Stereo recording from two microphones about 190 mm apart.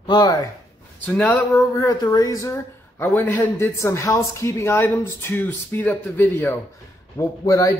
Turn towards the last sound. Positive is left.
turn(degrees=15)  # may be behind; listen again after turning